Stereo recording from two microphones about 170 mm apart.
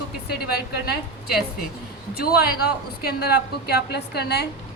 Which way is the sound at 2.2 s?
65° left (ahead or behind).